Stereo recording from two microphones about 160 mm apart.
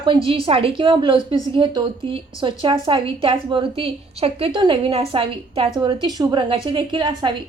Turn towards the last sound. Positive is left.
turn(degrees=-30)  # may be behind; listen again after turning